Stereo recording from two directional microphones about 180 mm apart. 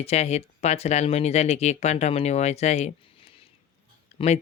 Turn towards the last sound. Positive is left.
turn(degrees=35)  # may be behind; listen again after turning